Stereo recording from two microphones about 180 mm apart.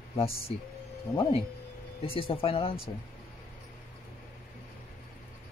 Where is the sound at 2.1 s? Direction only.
30° left (ahead or behind).